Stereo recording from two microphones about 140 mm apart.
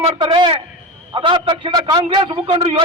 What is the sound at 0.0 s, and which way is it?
A man's voice, 35° right (ahead or behind).